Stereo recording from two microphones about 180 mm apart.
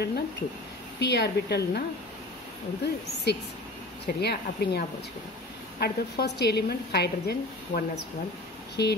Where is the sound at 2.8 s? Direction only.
65° left (ahead or behind).